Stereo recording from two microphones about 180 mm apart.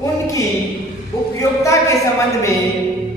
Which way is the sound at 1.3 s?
15° left (ahead or behind).